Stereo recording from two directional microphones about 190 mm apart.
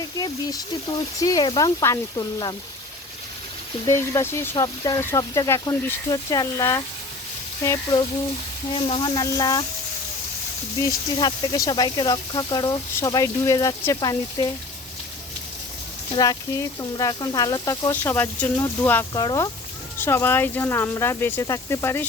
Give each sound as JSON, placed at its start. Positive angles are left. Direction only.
{"t": 0.2, "sound": "speech", "side_deg": 20}
{"t": 3.8, "sound": "speech", "side_deg": 15}
{"t": 8.7, "sound": "speech", "side_deg": 25}
{"t": 11.2, "sound": "speech", "side_deg": 20}
{"t": 16.1, "sound": "speech", "side_deg": 20}
{"t": 19.1, "sound": "speech", "side_deg": 20}